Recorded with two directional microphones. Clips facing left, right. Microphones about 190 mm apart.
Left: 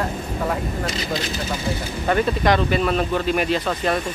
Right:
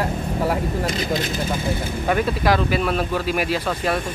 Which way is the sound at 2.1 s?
5° right (ahead or behind).